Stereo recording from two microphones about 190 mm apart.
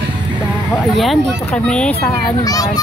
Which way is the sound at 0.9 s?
Centre (ahead or behind).